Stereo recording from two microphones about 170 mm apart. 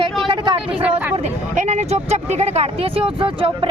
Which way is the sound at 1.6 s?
40° right (ahead or behind).